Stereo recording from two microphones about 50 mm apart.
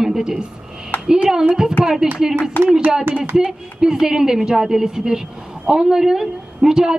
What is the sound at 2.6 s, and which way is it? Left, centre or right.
Speech, left.